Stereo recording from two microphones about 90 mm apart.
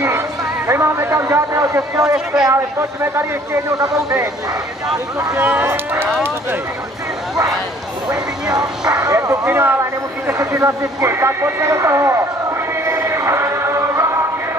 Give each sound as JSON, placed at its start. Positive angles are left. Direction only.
{"t": 0.7, "sound": "speech", "side_deg": -30}
{"t": 2.1, "sound": "speech", "side_deg": -5}
{"t": 2.5, "sound": "speech", "side_deg": -30}
{"t": 3.7, "sound": "speech", "side_deg": -40}
{"t": 5.6, "sound": "speech", "side_deg": -30}
{"t": 8.1, "sound": "speech", "side_deg": -40}
{"t": 8.9, "sound": "vehicle", "side_deg": -40}
{"t": 10.4, "sound": "speech", "side_deg": -35}
{"t": 12.8, "sound": "choir", "side_deg": -30}